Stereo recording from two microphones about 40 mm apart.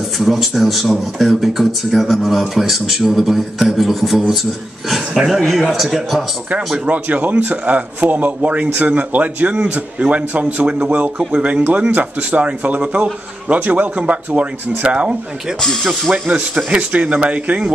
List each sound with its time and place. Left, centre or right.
0.2 s a man's voice: centre
5.1 s a man's voice: centre
5.4 s a man's voice: centre
6.9 s a man's voice: right
11.9 s a man's voice: right